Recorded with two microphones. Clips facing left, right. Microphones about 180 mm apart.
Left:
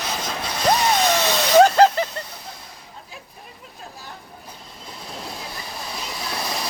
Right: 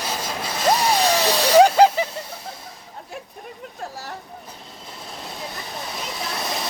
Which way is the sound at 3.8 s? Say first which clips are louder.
Right 6 dB; 80° right.